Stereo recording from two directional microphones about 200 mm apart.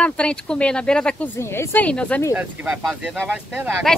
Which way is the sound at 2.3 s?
10° right (ahead or behind).